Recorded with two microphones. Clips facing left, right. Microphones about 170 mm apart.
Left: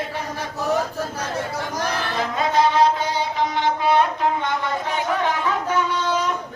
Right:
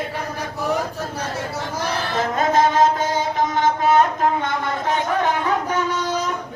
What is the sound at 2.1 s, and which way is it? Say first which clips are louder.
Music: right 3 dB; 45° right (ahead or behind).